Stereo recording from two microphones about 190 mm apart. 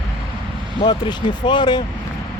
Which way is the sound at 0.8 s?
25° left (ahead or behind).